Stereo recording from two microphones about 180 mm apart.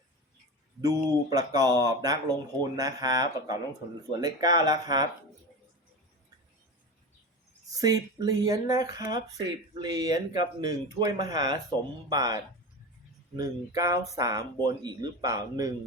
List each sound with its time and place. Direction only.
0.8 s speech: 20° right (ahead or behind)
7.7 s speech: 20° right (ahead or behind)